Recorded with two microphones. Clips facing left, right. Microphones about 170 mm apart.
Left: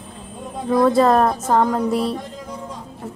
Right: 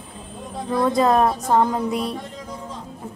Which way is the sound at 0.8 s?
Centre (ahead or behind).